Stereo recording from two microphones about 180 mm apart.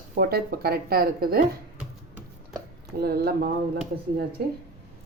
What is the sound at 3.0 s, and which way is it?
Speech, 60° right (ahead or behind).